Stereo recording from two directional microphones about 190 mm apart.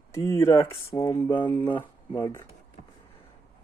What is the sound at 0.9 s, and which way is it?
Speech, 25° left (ahead or behind).